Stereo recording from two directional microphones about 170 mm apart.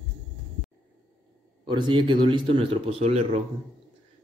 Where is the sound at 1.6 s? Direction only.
30° right (ahead or behind).